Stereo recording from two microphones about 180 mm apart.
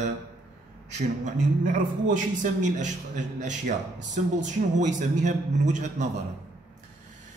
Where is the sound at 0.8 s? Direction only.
40° right (ahead or behind).